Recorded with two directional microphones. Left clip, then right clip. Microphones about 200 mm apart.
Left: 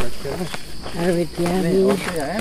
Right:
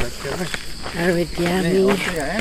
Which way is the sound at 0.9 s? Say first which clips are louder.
Right 1 dB; centre (ahead or behind).